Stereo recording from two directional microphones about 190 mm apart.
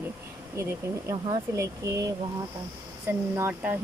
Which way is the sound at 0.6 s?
15° right (ahead or behind).